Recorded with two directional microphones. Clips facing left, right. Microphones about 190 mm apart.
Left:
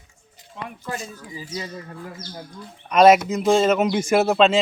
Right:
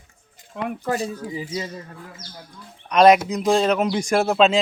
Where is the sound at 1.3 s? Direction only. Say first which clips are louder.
Right 4 dB; 20° right (ahead or behind).